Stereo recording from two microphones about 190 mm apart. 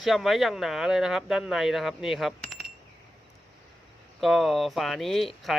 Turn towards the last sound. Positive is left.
turn(degrees=0)  # may be behind; listen again after turning